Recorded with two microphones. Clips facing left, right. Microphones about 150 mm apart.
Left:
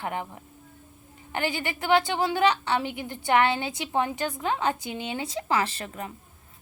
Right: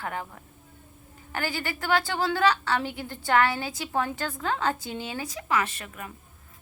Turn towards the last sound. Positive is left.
turn(degrees=30)  # may be behind; listen again after turning